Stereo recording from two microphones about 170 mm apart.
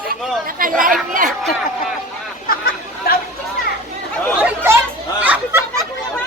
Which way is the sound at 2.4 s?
60° left (ahead or behind).